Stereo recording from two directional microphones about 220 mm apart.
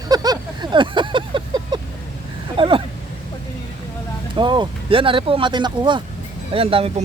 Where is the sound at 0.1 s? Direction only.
20° right (ahead or behind).